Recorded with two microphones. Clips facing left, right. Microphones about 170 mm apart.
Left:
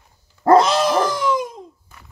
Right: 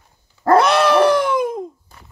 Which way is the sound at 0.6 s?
65° right (ahead or behind).